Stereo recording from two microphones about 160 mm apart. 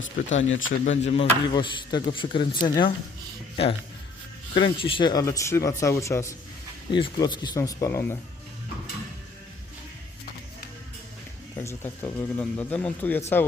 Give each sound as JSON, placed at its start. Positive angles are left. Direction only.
{"t": 0.3, "sound": "a man's voice", "side_deg": 45}
{"t": 6.9, "sound": "speech", "side_deg": 30}
{"t": 11.5, "sound": "a man's voice", "side_deg": 15}